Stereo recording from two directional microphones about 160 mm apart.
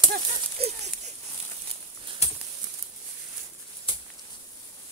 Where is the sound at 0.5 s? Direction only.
45° right (ahead or behind).